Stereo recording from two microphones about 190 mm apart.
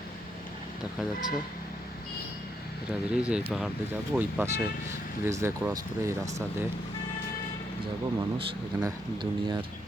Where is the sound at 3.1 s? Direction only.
5° right (ahead or behind).